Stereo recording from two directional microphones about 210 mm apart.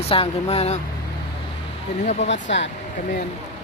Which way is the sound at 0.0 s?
30° left (ahead or behind).